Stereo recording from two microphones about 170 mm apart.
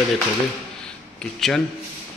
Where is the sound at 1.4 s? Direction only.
Centre (ahead or behind).